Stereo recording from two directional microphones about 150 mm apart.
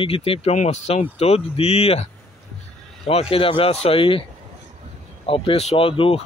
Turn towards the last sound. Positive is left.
turn(degrees=40)  # may be behind; listen again after turning